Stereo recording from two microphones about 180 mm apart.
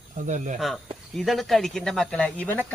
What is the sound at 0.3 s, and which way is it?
Speech, 45° right (ahead or behind).